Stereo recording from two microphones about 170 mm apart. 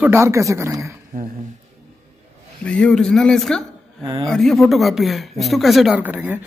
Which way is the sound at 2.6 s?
5° left (ahead or behind).